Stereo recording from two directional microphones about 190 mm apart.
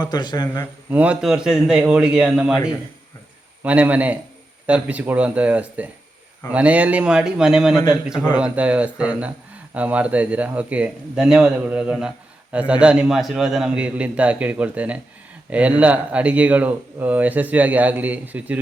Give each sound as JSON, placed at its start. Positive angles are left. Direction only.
{"t": 0.0, "sound": "a man's voice", "side_deg": 20}
{"t": 0.9, "sound": "a man's voice", "side_deg": -5}
{"t": 3.6, "sound": "a man's voice", "side_deg": -5}